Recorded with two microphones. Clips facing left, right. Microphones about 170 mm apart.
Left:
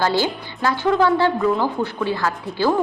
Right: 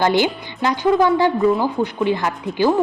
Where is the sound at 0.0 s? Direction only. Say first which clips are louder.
Right 3 dB; 20° right (ahead or behind).